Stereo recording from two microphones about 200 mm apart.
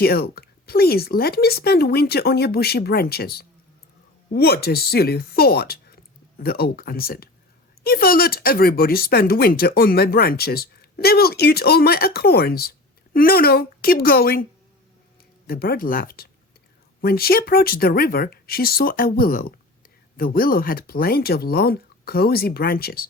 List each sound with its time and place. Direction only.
0.0 s speech: 50° left (ahead or behind)
15.4 s speech: 50° left (ahead or behind)